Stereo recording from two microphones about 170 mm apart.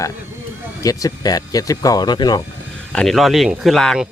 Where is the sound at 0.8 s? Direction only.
20° left (ahead or behind).